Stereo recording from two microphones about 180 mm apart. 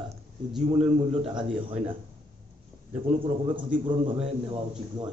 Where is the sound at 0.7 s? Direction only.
30° right (ahead or behind).